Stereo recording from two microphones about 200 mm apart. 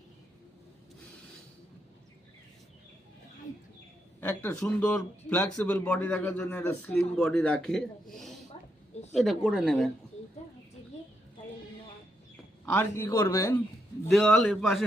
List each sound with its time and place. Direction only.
4.2 s speech: 10° left (ahead or behind)
6.9 s a woman's voice: centre (ahead or behind)
12.6 s speech: 10° left (ahead or behind)
14.1 s a woman's voice: centre (ahead or behind)